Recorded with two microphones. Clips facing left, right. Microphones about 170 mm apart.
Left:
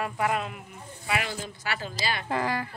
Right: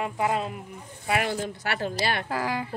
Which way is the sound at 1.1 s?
50° right (ahead or behind).